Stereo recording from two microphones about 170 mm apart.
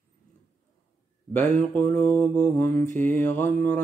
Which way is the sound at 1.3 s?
10° left (ahead or behind).